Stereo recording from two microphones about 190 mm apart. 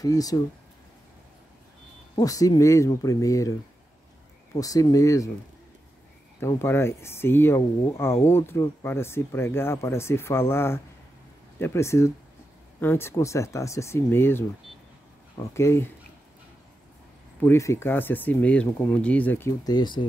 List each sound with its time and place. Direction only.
0.0 s speech: 20° left (ahead or behind)
2.1 s speech: 15° left (ahead or behind)
4.6 s speech: 20° left (ahead or behind)
6.4 s speech: 15° left (ahead or behind)
17.4 s speech: 15° left (ahead or behind)